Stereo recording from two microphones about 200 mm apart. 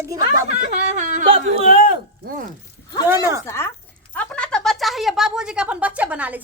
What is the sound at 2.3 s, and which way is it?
Speech, 45° right (ahead or behind).